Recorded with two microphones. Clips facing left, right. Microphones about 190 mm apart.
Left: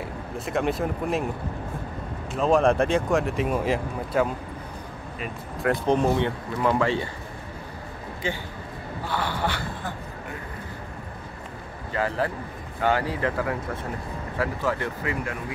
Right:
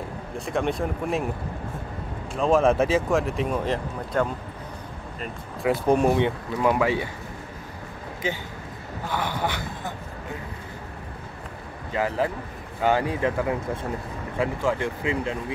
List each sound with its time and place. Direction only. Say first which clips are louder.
0.5 s speech: even; centre (ahead or behind)
2.3 s speech: even; centre (ahead or behind)
9.0 s speech: even; 15° right (ahead or behind)
11.9 s speech: right 1 dB; 15° right (ahead or behind)